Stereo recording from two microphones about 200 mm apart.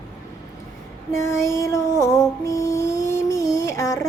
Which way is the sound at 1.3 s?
15° left (ahead or behind).